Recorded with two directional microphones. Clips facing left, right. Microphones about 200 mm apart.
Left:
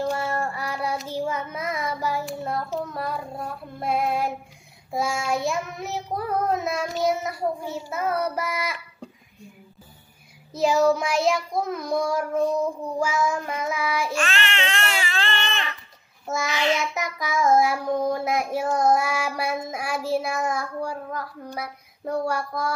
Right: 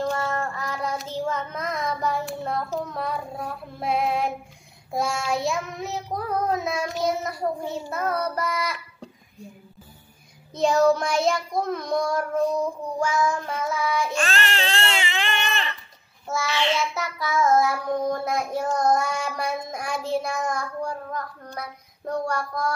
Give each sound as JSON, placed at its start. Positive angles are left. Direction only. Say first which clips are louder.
{"t": 0.0, "sound": "child singing", "louder": "even", "side_deg": 10}
{"t": 10.5, "sound": "child singing", "louder": "right 1 dB", "side_deg": 5}
{"t": 14.1, "sound": "baby cry", "louder": "right 1 dB", "side_deg": -40}
{"t": 16.5, "sound": "child singing", "louder": "left 1 dB", "side_deg": 10}